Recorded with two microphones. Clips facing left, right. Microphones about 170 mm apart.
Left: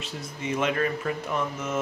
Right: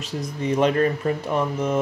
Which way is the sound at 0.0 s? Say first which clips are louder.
Right 7 dB; 35° right (ahead or behind).